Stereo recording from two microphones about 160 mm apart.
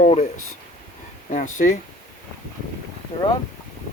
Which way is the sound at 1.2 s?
50° left (ahead or behind).